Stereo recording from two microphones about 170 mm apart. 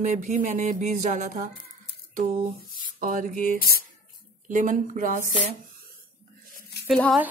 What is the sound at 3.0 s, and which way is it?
Speech, 55° right (ahead or behind).